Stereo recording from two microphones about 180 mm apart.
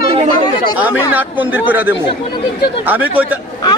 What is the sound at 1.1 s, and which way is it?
Speech, 10° right (ahead or behind).